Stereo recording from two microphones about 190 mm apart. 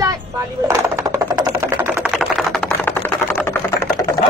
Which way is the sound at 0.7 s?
15° right (ahead or behind).